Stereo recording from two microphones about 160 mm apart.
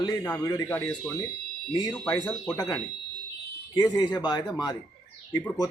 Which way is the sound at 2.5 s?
20° left (ahead or behind).